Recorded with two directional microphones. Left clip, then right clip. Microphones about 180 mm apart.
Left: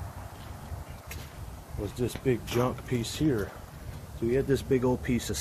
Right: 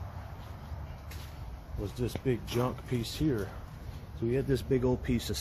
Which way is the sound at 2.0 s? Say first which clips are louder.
Left 4 dB; 10° right (ahead or behind).